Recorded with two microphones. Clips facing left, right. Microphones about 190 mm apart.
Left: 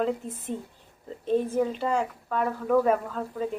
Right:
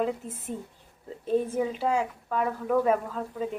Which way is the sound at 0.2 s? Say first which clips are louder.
Left 2 dB; centre (ahead or behind).